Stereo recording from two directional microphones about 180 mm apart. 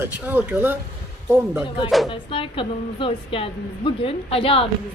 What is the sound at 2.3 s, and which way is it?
A woman's voice, 30° left (ahead or behind).